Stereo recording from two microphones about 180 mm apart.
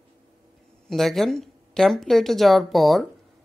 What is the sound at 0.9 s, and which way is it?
Speech, centre (ahead or behind).